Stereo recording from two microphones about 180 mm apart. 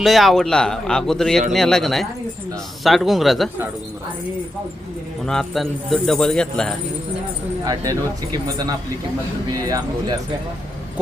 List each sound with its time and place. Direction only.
0.0 s speech: centre (ahead or behind)
5.2 s speech: 5° left (ahead or behind)
7.6 s speech: 20° right (ahead or behind)